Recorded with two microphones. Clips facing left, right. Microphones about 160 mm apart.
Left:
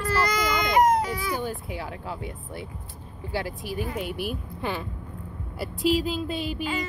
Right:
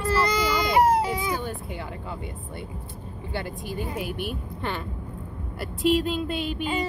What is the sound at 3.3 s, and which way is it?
Speech, 5° left (ahead or behind).